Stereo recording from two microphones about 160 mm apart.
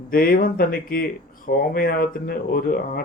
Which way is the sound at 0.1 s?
65° left (ahead or behind).